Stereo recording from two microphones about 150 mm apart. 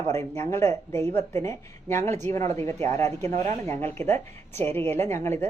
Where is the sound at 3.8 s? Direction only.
15° left (ahead or behind).